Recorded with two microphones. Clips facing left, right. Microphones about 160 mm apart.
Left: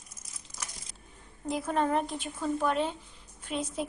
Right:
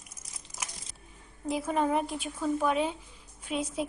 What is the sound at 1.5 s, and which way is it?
A woman's voice, 5° right (ahead or behind).